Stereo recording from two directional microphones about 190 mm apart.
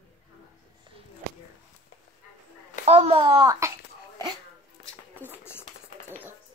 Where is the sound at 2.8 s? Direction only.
30° right (ahead or behind).